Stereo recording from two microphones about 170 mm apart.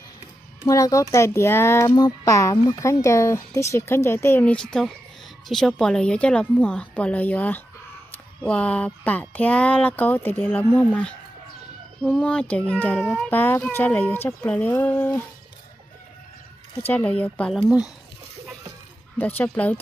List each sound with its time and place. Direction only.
0.7 s a child's voice: 20° left (ahead or behind); by 13.3 s centre (ahead or behind)
13.3 s speech: 15° left (ahead or behind)
16.8 s speech: 10° left (ahead or behind)
19.1 s speech: 10° left (ahead or behind)